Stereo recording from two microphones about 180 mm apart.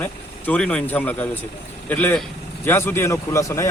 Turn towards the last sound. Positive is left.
turn(degrees=15)  # may be behind; listen again after turning